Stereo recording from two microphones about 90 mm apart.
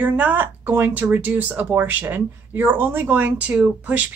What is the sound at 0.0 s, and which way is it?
Speech, 20° right (ahead or behind).